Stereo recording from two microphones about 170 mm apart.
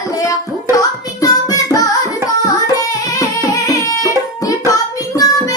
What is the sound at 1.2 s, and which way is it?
Music, 20° left (ahead or behind).